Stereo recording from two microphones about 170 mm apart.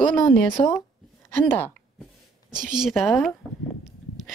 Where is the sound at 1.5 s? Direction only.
10° left (ahead or behind).